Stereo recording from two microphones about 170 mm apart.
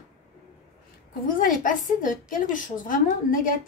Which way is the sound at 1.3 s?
50° left (ahead or behind).